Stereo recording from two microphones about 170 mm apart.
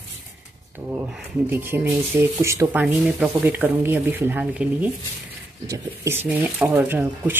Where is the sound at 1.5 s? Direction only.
10° right (ahead or behind).